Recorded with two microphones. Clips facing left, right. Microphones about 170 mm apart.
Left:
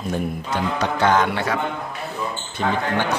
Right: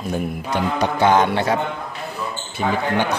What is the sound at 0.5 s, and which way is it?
Speech, 15° right (ahead or behind).